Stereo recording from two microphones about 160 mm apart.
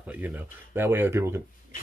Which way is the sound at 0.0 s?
10° right (ahead or behind).